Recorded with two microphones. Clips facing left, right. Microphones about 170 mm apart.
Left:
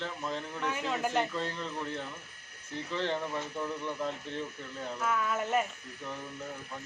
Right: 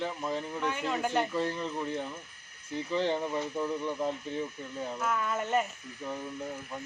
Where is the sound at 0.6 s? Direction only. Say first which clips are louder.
Even; centre (ahead or behind).